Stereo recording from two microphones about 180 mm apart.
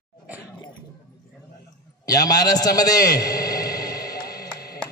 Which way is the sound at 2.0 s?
20° left (ahead or behind).